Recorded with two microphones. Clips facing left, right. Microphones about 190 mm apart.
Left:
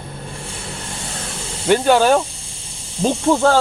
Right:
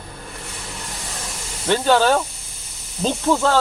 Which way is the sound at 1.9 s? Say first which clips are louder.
Left 2 dB; 10° left (ahead or behind).